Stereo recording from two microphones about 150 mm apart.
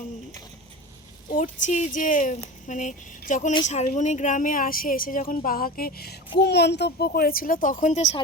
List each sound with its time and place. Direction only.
1.3 s a woman's voice: 60° left (ahead or behind)